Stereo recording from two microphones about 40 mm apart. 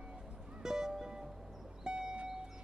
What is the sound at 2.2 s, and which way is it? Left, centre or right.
Vehicle, centre.